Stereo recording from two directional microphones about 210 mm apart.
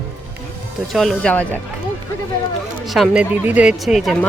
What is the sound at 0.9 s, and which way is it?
Speech, centre (ahead or behind).